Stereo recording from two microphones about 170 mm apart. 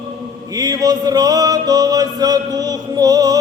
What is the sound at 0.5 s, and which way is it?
Music, 20° right (ahead or behind).